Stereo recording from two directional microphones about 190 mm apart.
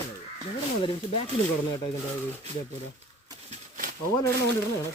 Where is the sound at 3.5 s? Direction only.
45° right (ahead or behind).